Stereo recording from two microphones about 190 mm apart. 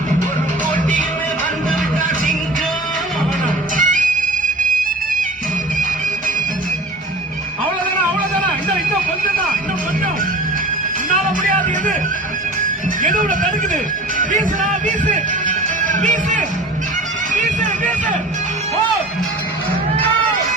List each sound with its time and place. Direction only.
3.8 s music: 45° right (ahead or behind)
11.1 s music: 40° right (ahead or behind)
13.0 s music: 45° right (ahead or behind)